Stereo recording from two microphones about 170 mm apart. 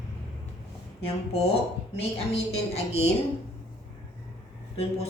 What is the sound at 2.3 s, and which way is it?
Speech, 35° left (ahead or behind).